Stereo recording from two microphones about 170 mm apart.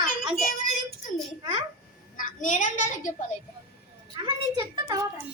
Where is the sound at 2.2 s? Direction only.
50° left (ahead or behind).